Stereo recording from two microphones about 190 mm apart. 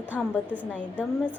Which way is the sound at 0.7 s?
5° left (ahead or behind).